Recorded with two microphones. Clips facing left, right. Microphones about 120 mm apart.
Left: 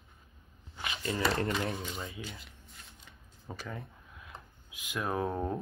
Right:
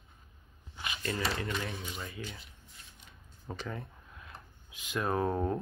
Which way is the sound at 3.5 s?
Centre (ahead or behind).